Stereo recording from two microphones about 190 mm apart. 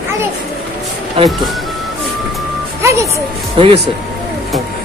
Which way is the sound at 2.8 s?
15° right (ahead or behind).